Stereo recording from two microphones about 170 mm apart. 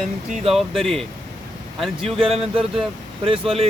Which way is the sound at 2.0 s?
35° right (ahead or behind).